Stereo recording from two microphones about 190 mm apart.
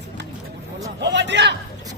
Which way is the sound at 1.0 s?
65° right (ahead or behind).